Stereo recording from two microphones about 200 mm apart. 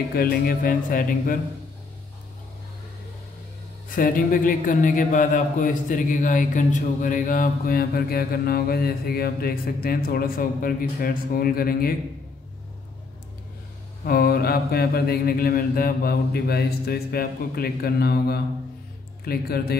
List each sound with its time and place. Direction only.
0.1 s a man's voice: 45° left (ahead or behind)
3.9 s a man's voice: 45° left (ahead or behind)
14.0 s a man's voice: 50° left (ahead or behind)